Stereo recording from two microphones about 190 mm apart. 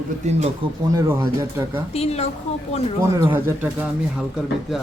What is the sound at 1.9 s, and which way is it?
Speech, 35° left (ahead or behind).